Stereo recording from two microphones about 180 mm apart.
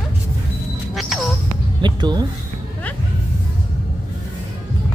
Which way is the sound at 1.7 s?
25° right (ahead or behind).